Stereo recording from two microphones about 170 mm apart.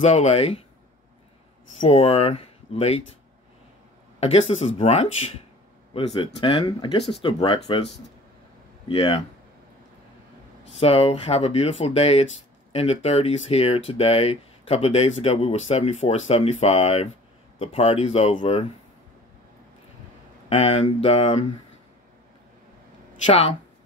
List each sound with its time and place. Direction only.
0.0 s speech: 40° left (ahead or behind)
1.8 s speech: 40° left (ahead or behind)
4.2 s speech: 40° left (ahead or behind)
10.8 s speech: 35° left (ahead or behind)
20.4 s speech: 35° left (ahead or behind)